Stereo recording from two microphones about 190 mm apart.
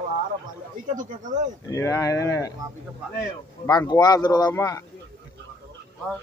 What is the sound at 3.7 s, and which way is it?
Speech, 20° left (ahead or behind).